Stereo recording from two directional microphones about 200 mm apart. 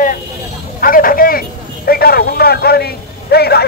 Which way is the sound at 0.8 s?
45° left (ahead or behind).